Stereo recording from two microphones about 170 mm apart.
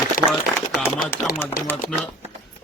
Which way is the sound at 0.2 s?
55° left (ahead or behind).